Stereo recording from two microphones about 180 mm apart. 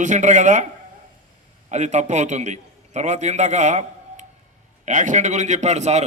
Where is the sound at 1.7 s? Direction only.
40° right (ahead or behind).